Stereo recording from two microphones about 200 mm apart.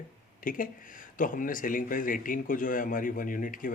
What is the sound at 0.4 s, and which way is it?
Speech, 45° left (ahead or behind).